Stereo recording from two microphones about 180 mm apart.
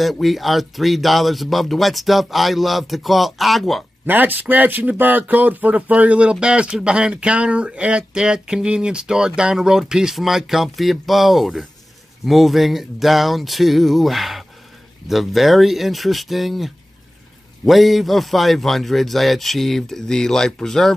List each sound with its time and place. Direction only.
0.0 s speech: centre (ahead or behind)
4.1 s speech: 10° right (ahead or behind)